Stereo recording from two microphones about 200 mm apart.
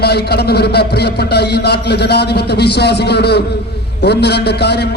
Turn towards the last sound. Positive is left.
turn(degrees=55)  # may be behind; listen again after turning